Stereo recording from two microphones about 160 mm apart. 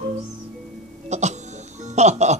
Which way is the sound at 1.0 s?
45° right (ahead or behind).